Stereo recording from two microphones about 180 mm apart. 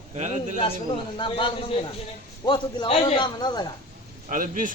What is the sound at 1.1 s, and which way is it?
A man's voice, 30° left (ahead or behind).